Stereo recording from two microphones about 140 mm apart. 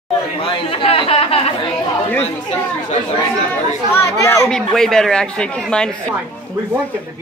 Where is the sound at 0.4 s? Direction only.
40° left (ahead or behind).